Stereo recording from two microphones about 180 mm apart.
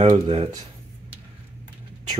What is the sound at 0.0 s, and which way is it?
Speech, 30° right (ahead or behind).